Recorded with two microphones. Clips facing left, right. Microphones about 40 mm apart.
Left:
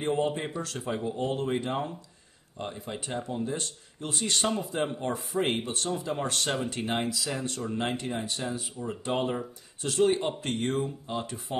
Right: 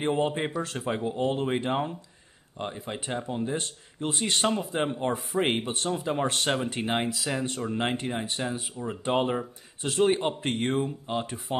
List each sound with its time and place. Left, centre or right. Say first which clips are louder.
0.0 s speech: right 2 dB; right